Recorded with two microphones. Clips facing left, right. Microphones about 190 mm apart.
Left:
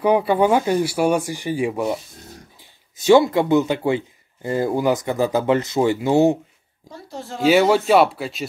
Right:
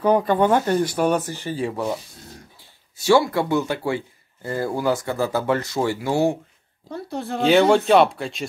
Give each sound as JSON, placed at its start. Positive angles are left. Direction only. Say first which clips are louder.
{"t": 0.0, "sound": "speech", "louder": "left 1 dB", "side_deg": 10}
{"t": 3.0, "sound": "speech", "louder": "left 4 dB", "side_deg": 20}
{"t": 6.9, "sound": "speech", "louder": "right 5 dB", "side_deg": -60}
{"t": 7.4, "sound": "speech", "louder": "left 1 dB", "side_deg": 5}